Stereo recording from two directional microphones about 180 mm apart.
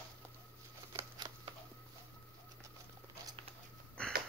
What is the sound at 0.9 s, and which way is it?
Scissors, 20° right (ahead or behind).